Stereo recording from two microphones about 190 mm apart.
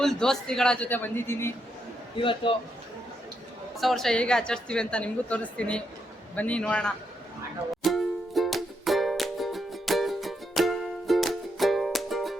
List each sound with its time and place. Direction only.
0.0 s a woman's voice: centre (ahead or behind)
2.1 s a man's voice: 25° left (ahead or behind)
3.8 s a woman's voice: centre (ahead or behind)
7.9 s music: centre (ahead or behind)